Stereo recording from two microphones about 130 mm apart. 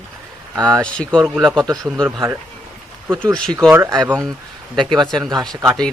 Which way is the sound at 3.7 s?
20° right (ahead or behind).